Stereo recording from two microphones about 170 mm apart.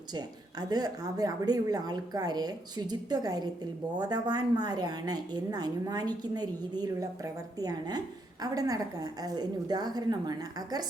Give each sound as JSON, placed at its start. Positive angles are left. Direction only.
{"t": 0.7, "sound": "a woman's voice", "side_deg": -25}
{"t": 7.6, "sound": "a woman's voice", "side_deg": -25}